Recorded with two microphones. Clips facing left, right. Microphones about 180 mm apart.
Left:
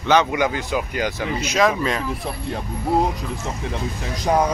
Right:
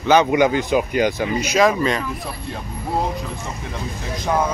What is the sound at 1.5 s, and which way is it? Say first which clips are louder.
Speech: right 2 dB; centre (ahead or behind).